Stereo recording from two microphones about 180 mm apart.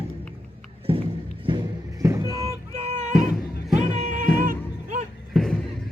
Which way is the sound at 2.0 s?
15° right (ahead or behind).